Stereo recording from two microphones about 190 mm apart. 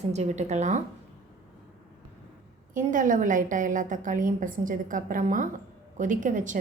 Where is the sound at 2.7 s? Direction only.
45° right (ahead or behind).